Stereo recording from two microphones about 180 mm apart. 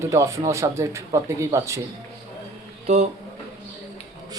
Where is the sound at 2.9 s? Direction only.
35° right (ahead or behind).